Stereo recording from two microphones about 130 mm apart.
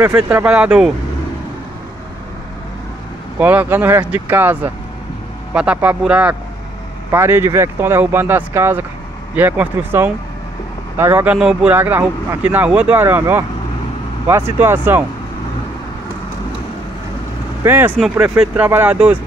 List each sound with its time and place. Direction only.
0.1 s speech: 10° right (ahead or behind)
3.3 s speech: 15° right (ahead or behind)
11.3 s speech: 5° right (ahead or behind)
11.7 s speech: 15° right (ahead or behind)
17.6 s speech: 15° right (ahead or behind)